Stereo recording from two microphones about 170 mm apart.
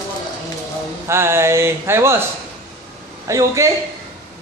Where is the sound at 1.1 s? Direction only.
15° right (ahead or behind).